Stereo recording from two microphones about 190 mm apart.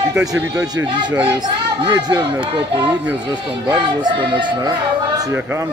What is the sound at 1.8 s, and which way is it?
Speech, 20° right (ahead or behind).